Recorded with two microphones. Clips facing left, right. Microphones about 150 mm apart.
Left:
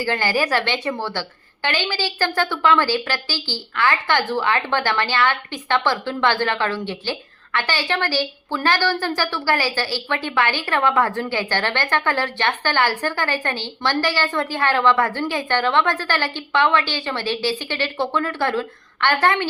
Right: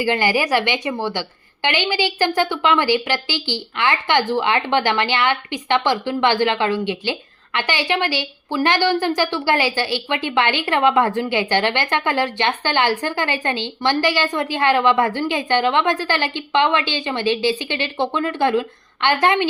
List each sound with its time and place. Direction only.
0.0 s a woman's voice: 15° right (ahead or behind)